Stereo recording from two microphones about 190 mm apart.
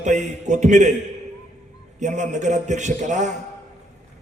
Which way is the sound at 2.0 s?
40° right (ahead or behind).